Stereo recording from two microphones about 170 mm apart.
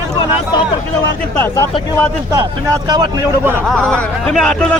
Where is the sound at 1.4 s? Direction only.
15° left (ahead or behind).